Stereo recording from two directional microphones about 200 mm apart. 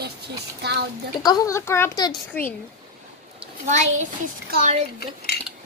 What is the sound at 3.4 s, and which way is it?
Speech, 35° right (ahead or behind).